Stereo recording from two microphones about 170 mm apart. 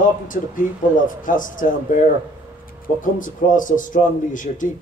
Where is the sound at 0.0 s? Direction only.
50° left (ahead or behind).